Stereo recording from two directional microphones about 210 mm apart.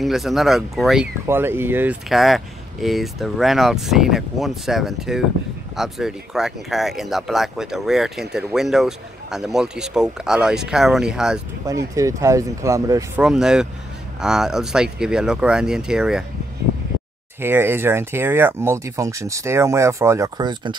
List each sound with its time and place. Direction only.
0.0 s speech: centre (ahead or behind)
11.9 s speech: 15° right (ahead or behind)
13.2 s speech: 5° right (ahead or behind)
17.4 s speech: 10° right (ahead or behind)